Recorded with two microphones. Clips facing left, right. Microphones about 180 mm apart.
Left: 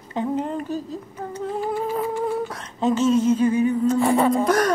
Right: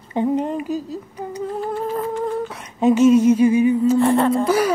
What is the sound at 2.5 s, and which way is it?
Humming, 10° right (ahead or behind).